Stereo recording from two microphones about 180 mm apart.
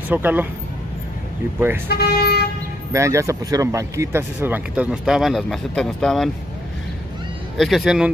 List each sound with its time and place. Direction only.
0.1 s speech: 10° right (ahead or behind)
1.9 s speech: 60° left (ahead or behind)
2.9 s speech: 15° right (ahead or behind); by 6.3 s centre (ahead or behind)
7.5 s speech: centre (ahead or behind)